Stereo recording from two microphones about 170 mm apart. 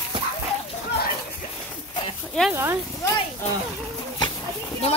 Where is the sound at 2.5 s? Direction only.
15° right (ahead or behind).